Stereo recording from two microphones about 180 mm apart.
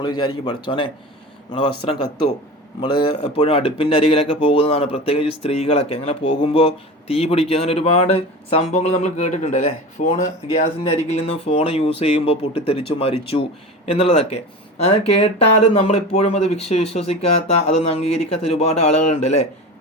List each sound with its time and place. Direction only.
0.0 s speech: 25° left (ahead or behind)